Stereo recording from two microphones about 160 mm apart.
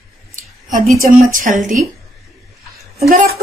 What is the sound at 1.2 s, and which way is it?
Speech, 55° right (ahead or behind).